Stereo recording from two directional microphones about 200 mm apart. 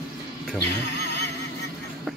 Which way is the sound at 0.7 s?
55° left (ahead or behind).